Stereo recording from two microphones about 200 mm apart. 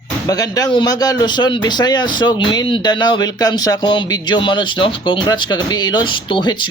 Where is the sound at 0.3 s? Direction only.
20° left (ahead or behind).